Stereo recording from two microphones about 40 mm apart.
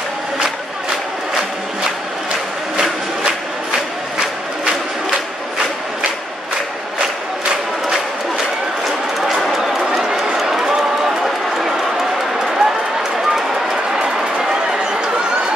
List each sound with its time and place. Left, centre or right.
9.3 s run: centre
13.9 s run: centre